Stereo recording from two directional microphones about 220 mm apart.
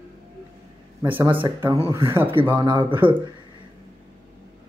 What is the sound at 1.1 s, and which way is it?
Speech, 25° right (ahead or behind).